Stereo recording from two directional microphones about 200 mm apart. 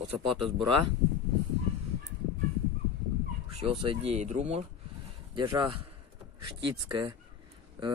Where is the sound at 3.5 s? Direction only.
25° right (ahead or behind).